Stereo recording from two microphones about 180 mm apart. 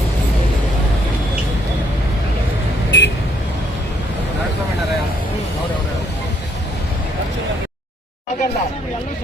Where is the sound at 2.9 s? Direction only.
75° left (ahead or behind).